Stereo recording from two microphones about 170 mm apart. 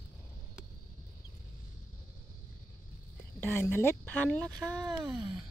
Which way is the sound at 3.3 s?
15° left (ahead or behind).